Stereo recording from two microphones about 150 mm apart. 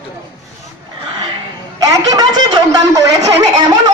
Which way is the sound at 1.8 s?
20° right (ahead or behind).